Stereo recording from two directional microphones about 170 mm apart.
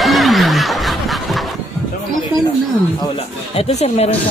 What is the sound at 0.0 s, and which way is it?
Snicker, centre (ahead or behind).